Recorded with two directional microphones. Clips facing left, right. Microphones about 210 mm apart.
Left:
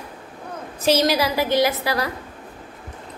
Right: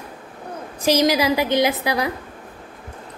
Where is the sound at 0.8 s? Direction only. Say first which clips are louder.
Right 2 dB; 15° right (ahead or behind).